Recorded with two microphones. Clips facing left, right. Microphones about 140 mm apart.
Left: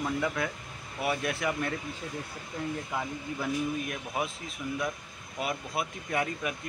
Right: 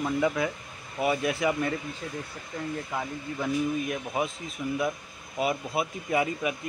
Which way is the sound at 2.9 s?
5° right (ahead or behind).